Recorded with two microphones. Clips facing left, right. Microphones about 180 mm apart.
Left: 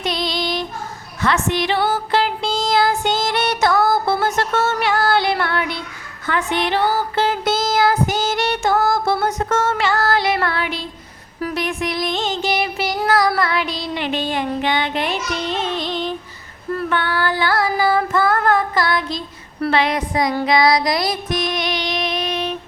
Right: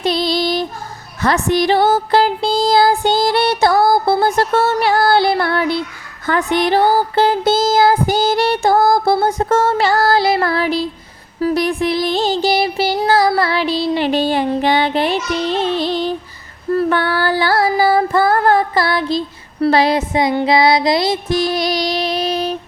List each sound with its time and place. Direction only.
0.0 s child singing: 30° right (ahead or behind)
1.2 s music: 40° right (ahead or behind)
6.2 s a sound: 40° right (ahead or behind)
8.0 s music: 35° right (ahead or behind)
11.3 s child singing: 30° right (ahead or behind)
16.7 s female singing: 35° right (ahead or behind)
19.6 s child singing: 35° right (ahead or behind)